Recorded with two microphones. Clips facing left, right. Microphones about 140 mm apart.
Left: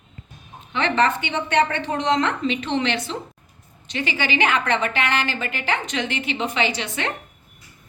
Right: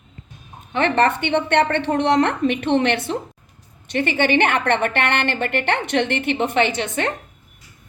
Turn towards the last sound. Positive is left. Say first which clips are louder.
# right 4 dB
turn(degrees=-50)  # may be behind; listen again after turning